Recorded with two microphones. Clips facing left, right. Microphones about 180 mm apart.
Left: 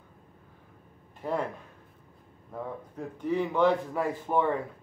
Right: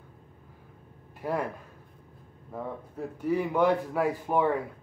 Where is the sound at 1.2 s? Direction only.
10° right (ahead or behind).